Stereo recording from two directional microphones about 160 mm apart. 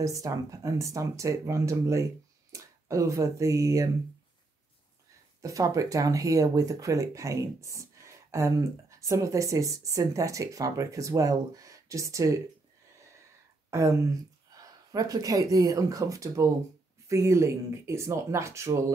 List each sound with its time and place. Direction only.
0.0 s speech: 20° right (ahead or behind)
5.4 s speech: 20° right (ahead or behind)
13.7 s speech: 20° right (ahead or behind)